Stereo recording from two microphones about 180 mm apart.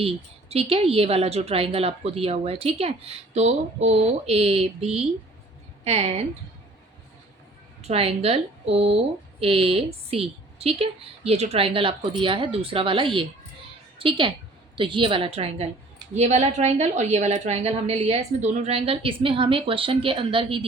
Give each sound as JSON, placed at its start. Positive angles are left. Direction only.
{"t": 0.0, "sound": "speech", "side_deg": -35}
{"t": 7.8, "sound": "a woman's voice", "side_deg": -35}